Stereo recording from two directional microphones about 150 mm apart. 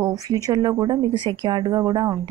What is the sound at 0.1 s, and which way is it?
Speech, 25° right (ahead or behind).